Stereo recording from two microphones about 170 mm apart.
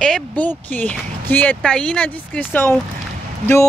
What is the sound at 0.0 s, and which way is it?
Speech, 5° left (ahead or behind).